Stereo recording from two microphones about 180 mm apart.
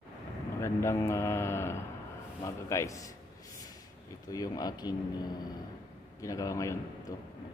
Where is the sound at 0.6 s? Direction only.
15° left (ahead or behind).